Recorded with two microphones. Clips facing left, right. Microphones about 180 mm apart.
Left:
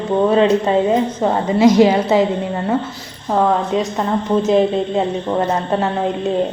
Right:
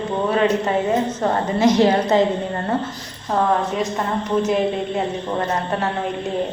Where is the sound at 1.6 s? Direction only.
10° left (ahead or behind).